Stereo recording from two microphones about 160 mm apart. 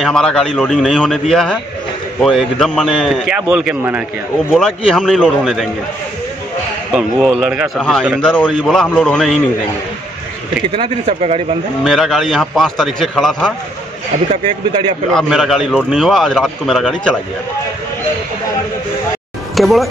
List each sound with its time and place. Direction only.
0.0 s a man's voice: 5° left (ahead or behind)
4.5 s a man's voice: 5° left (ahead or behind)
6.9 s a man's voice: 5° right (ahead or behind)
10.8 s speech: 40° right (ahead or behind)
11.8 s a man's voice: centre (ahead or behind)
14.3 s speech: 35° right (ahead or behind)
15.1 s a man's voice: centre (ahead or behind)
19.5 s speech: centre (ahead or behind)